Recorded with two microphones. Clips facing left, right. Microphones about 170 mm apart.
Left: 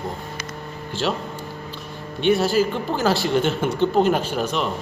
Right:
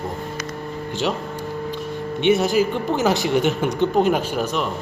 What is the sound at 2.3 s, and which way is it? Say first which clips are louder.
A woman's voice: right 1 dB; 20° right (ahead or behind).